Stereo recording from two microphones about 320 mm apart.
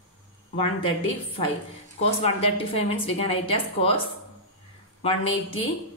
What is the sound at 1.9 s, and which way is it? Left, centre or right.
A woman's voice, centre.